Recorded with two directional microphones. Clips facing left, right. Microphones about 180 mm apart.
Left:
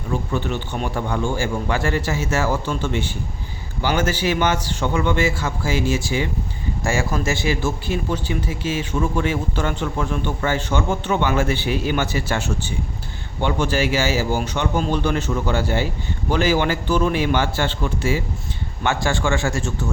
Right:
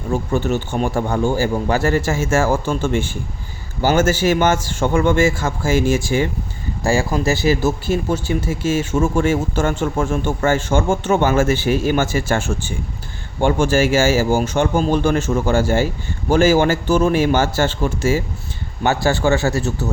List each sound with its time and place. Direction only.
0.1 s speech: 45° right (ahead or behind)
7.3 s a man's voice: 40° right (ahead or behind)